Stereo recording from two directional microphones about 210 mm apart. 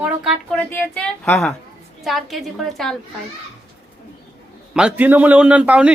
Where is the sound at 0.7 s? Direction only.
10° left (ahead or behind).